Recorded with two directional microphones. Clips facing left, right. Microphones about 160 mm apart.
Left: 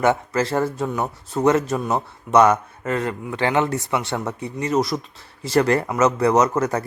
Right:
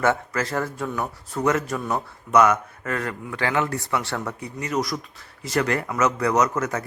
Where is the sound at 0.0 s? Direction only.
25° left (ahead or behind).